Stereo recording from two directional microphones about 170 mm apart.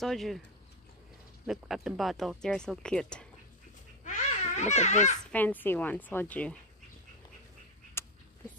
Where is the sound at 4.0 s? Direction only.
45° left (ahead or behind).